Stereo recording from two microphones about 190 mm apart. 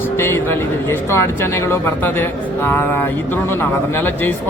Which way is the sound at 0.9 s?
15° left (ahead or behind).